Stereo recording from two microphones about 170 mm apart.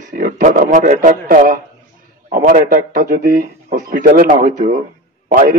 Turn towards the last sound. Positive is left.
turn(degrees=-55)  # may be behind; listen again after turning